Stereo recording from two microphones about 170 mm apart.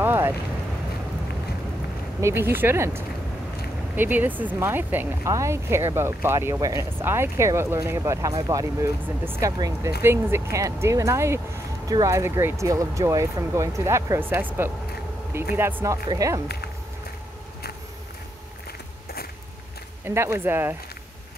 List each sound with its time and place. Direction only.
0.0 s vehicle: 10° right (ahead or behind)
2.2 s speech: 15° right (ahead or behind)
20.1 s speech: 15° right (ahead or behind)